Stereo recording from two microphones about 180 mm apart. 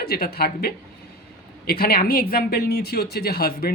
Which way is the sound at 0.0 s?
60° left (ahead or behind).